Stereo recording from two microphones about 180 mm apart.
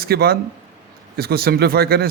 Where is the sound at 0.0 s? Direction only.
60° right (ahead or behind).